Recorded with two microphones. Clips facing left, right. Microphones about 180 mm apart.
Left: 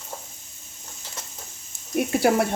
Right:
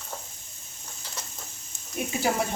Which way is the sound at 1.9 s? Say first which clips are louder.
Left 7 dB; 60° left (ahead or behind).